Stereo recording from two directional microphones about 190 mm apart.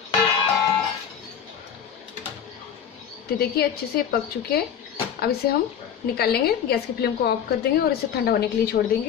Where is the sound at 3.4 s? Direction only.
55° left (ahead or behind).